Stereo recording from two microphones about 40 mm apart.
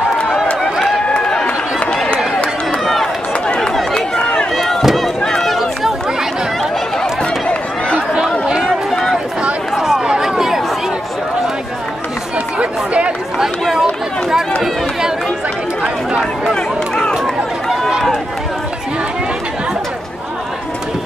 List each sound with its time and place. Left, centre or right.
1.0 s a sound: left
2.8 s run: centre
3.4 s chatter: left
4.6 s chop: centre
5.2 s run: centre
8.5 s run: centre
8.9 s a sound: centre
9.8 s a sound: centre
12.5 s chatter: right
13.4 s chatter: centre
14.6 s run: centre
16.2 s a sound: centre
17.6 s run: centre